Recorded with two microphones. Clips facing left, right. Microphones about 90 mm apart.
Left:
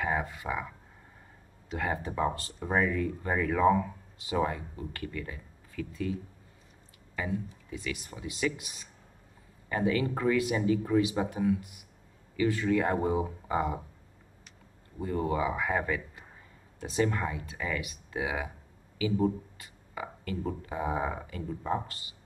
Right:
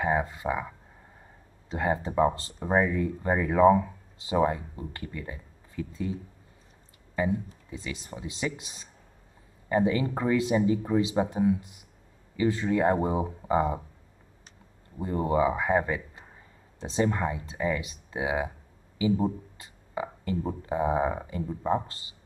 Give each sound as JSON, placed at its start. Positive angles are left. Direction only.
{"t": 0.0, "sound": "speech", "side_deg": -25}
{"t": 1.7, "sound": "speech", "side_deg": -25}
{"t": 7.2, "sound": "speech", "side_deg": -25}
{"t": 15.0, "sound": "speech", "side_deg": -25}